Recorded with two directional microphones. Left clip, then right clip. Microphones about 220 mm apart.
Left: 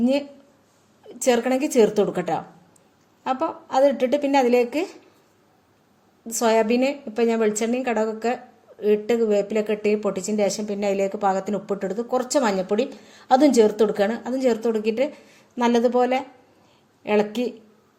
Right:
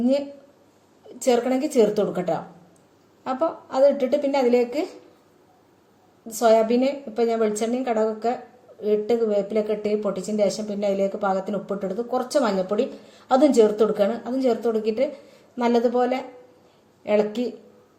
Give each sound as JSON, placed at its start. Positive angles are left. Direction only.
{"t": 1.0, "sound": "speech", "side_deg": 35}
{"t": 6.2, "sound": "speech", "side_deg": 35}